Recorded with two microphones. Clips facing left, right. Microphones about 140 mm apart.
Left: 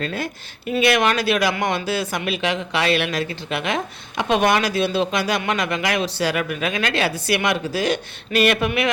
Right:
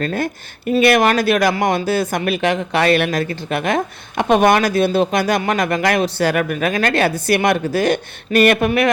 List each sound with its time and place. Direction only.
0.0 s speech: 50° right (ahead or behind)